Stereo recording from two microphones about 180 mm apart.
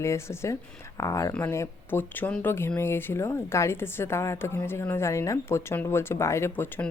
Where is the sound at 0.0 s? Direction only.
15° left (ahead or behind).